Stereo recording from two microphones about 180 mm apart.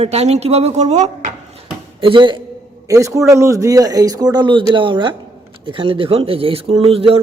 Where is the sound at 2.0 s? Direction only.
30° right (ahead or behind).